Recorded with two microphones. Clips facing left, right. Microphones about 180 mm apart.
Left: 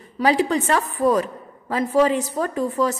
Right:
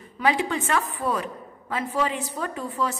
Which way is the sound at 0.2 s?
40° left (ahead or behind).